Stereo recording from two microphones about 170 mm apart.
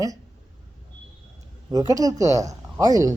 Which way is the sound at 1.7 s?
20° right (ahead or behind).